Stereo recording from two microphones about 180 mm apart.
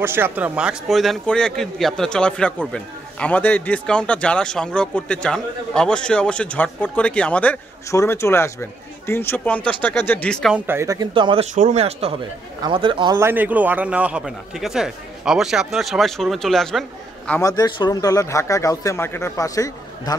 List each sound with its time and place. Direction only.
0.0 s a man's voice: 10° right (ahead or behind)
10.7 s speech: 15° right (ahead or behind)
11.5 s speech: 40° right (ahead or behind)
13.2 s a man's voice: 10° right (ahead or behind)
17.3 s a man's voice: 20° left (ahead or behind)